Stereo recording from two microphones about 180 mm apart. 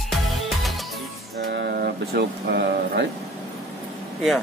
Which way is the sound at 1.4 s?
65° right (ahead or behind).